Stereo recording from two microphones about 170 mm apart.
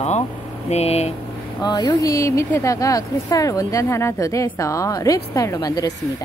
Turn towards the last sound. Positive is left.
turn(degrees=20)  # may be behind; listen again after turning